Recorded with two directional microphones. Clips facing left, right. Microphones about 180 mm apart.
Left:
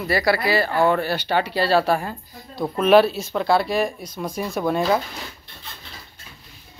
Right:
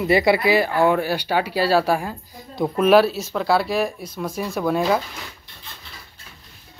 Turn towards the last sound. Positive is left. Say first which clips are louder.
# even
turn(degrees=-5)  # may be behind; listen again after turning